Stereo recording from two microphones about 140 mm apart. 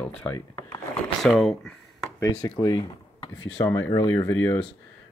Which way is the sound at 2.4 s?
25° left (ahead or behind).